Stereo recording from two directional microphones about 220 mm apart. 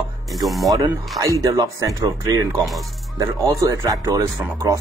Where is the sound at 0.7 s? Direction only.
15° right (ahead or behind).